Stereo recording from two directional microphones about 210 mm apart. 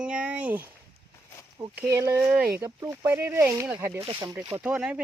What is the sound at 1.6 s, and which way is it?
Speech, 20° right (ahead or behind).